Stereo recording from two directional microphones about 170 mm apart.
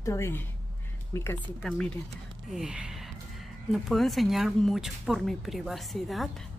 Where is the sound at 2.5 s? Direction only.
5° right (ahead or behind).